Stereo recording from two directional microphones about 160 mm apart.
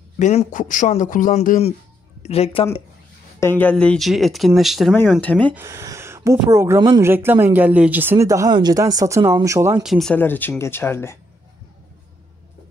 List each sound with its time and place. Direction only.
0.2 s a man's voice: 45° left (ahead or behind)
2.2 s a woman's voice: 40° left (ahead or behind)
3.3 s speech: 15° left (ahead or behind)
5.5 s speech: 15° right (ahead or behind)
9.8 s speech: centre (ahead or behind)